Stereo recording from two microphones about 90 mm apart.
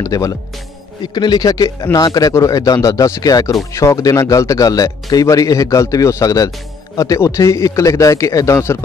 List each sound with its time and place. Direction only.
0.0 s speech: 40° left (ahead or behind)
1.1 s speech: 55° left (ahead or behind); by 8.7 s 35° left (ahead or behind)